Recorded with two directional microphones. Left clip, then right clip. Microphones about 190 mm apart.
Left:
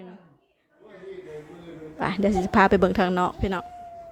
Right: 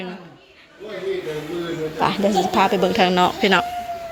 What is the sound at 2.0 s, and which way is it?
Speech, 50° left (ahead or behind).